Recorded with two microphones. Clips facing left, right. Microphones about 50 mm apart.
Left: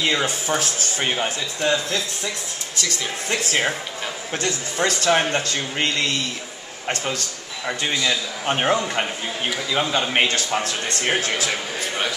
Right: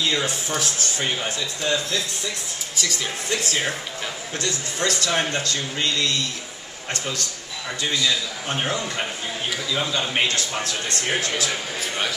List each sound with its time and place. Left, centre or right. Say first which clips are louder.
0.0 s speech: left 2 dB; left
2.7 s speech: even; centre
3.3 s speech: left 3 dB; left
7.8 s speech: even; left